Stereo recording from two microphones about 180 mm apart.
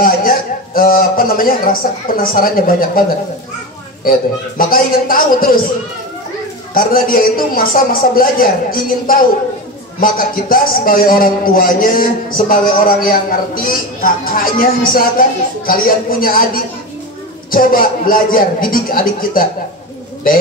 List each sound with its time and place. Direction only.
0.0 s a man's voice: 50° left (ahead or behind)
4.6 s a man's voice: 50° left (ahead or behind)
6.7 s a man's voice: 55° left (ahead or behind)